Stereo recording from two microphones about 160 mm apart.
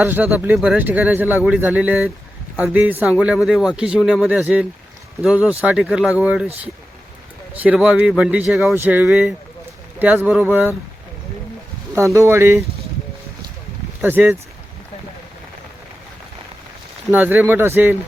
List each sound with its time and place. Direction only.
0.0 s a man's voice: 10° right (ahead or behind)
7.5 s speech: 10° right (ahead or behind)
11.9 s speech: 20° right (ahead or behind)
14.0 s speech: 10° right (ahead or behind)
17.1 s speech: 10° right (ahead or behind)